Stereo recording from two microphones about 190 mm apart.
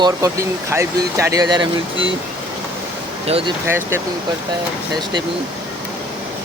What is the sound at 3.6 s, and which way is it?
Speech, 10° right (ahead or behind).